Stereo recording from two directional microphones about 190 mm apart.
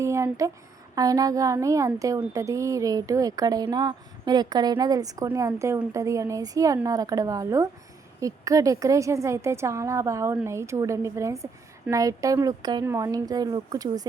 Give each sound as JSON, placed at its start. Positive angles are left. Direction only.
{"t": 0.0, "sound": "a woman's voice", "side_deg": -15}